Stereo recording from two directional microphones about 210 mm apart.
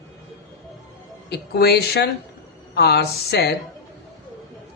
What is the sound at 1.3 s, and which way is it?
A woman's voice, 50° left (ahead or behind).